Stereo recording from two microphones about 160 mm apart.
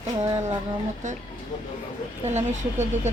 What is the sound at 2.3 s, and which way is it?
Speech, 45° right (ahead or behind).